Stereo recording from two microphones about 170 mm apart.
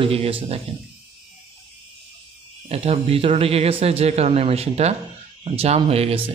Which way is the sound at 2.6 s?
35° right (ahead or behind).